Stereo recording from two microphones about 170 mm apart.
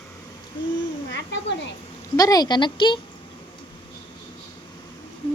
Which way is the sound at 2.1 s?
20° left (ahead or behind).